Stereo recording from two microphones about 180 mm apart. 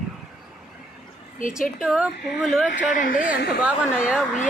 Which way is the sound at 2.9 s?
50° left (ahead or behind).